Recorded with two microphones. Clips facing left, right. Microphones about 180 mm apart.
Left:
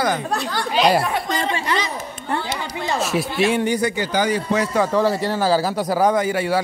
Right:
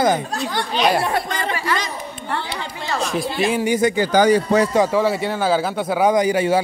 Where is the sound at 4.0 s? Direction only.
40° right (ahead or behind).